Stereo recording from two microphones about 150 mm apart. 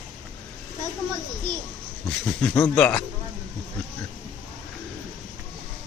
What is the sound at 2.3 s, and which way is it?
Speech, 10° left (ahead or behind).